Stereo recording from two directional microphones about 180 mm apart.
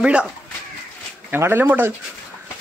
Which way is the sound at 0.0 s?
5° right (ahead or behind).